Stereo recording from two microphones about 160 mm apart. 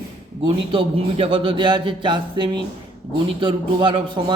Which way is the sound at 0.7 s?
35° right (ahead or behind).